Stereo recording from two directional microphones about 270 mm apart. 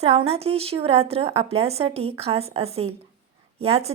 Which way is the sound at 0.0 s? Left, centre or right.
Right.